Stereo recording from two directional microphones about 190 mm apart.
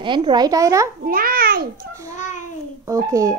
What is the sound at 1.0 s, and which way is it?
Speech, 50° right (ahead or behind).